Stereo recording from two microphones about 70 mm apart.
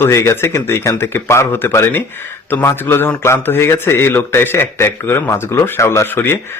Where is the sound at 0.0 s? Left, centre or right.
Left.